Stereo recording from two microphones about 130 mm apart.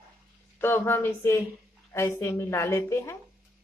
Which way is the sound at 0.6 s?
20° left (ahead or behind).